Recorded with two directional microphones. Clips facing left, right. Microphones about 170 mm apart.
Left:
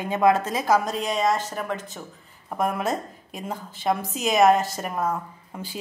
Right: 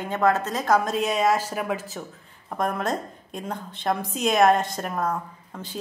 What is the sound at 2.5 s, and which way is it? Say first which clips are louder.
A woman's voice: left 1 dB; 5° left (ahead or behind).